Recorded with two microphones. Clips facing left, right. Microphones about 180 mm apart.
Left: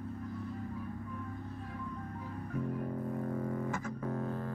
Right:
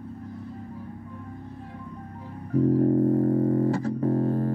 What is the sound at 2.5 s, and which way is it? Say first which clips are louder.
Music: right 17 dB; 35° right (ahead or behind).